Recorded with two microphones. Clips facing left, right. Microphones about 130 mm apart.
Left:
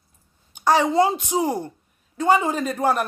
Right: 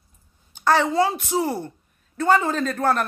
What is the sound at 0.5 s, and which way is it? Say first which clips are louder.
A woman's voice: left 1 dB; 15° left (ahead or behind).